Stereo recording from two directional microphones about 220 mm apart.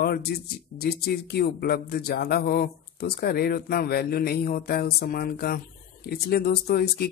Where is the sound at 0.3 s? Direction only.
45° left (ahead or behind).